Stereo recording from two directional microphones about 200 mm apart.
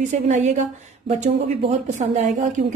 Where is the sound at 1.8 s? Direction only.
35° right (ahead or behind).